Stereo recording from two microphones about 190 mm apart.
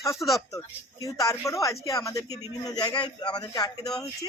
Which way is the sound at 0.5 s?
20° left (ahead or behind).